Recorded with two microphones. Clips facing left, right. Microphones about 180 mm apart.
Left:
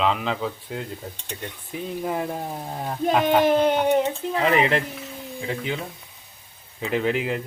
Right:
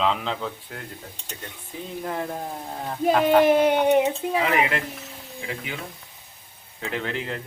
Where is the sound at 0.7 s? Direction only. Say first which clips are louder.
Left 7 dB; 20° left (ahead or behind).